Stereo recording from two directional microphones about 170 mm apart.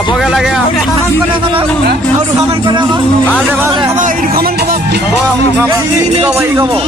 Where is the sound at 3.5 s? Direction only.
15° right (ahead or behind).